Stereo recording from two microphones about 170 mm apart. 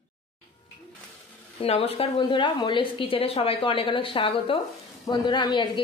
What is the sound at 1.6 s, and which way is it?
A woman's voice, 35° left (ahead or behind).